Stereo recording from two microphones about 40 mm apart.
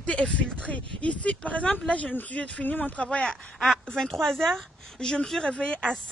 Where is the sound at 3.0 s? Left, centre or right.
Left.